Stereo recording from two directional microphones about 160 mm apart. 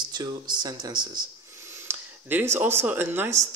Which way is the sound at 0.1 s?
25° right (ahead or behind).